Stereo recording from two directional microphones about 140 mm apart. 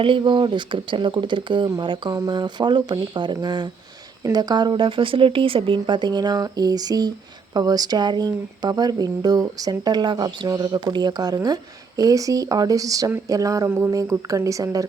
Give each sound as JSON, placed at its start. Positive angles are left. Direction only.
{"t": 0.0, "sound": "speech", "side_deg": -35}
{"t": 13.7, "sound": "speech", "side_deg": -15}